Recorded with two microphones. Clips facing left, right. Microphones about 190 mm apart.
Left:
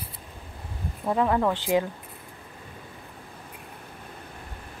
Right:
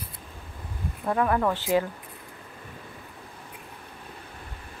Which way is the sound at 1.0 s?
15° left (ahead or behind).